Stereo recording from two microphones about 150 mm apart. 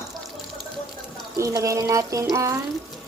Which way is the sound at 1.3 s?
20° right (ahead or behind).